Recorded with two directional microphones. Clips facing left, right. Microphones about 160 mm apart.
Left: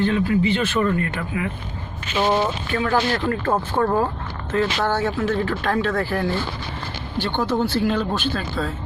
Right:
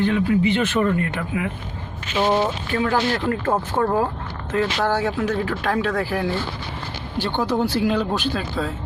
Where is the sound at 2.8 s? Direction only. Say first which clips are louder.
Even; 15° right (ahead or behind).